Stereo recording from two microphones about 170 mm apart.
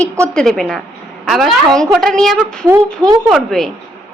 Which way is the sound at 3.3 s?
Centre (ahead or behind).